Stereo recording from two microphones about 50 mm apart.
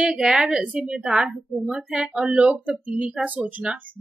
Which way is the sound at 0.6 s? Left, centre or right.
Right.